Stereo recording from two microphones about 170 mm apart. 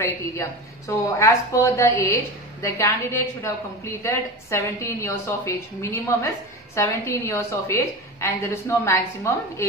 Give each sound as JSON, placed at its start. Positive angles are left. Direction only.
{"t": 0.0, "sound": "a woman's voice", "side_deg": 15}